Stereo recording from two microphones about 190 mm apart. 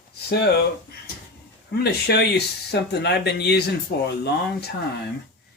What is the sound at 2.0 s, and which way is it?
Speech, 60° left (ahead or behind).